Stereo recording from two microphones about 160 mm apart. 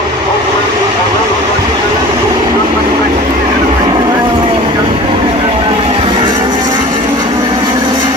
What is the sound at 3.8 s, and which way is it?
Vehicle, 30° right (ahead or behind).